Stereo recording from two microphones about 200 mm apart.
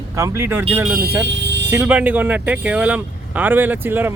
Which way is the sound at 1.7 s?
10° right (ahead or behind).